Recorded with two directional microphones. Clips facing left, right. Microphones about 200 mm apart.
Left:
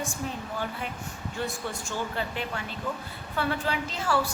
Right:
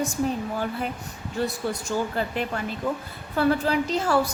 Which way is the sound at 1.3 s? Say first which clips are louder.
Right 7 dB; 40° right (ahead or behind).